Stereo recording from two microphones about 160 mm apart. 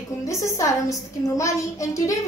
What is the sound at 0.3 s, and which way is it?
A woman's voice, 20° left (ahead or behind).